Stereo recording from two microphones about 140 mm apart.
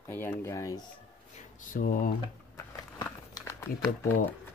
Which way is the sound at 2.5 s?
25° left (ahead or behind).